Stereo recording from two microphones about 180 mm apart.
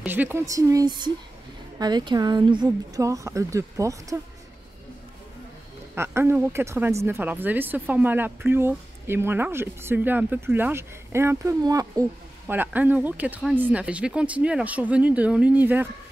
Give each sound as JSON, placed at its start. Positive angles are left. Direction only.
{"t": 0.0, "sound": "speech", "side_deg": -10}
{"t": 5.9, "sound": "speech", "side_deg": -15}